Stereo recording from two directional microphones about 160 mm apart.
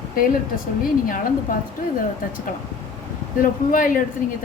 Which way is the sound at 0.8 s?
60° left (ahead or behind).